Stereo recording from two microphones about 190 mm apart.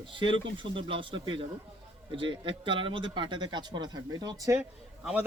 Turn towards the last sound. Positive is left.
turn(degrees=-10)  # may be behind; listen again after turning